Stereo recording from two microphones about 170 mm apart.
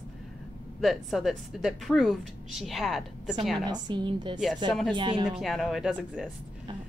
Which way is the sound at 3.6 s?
25° right (ahead or behind).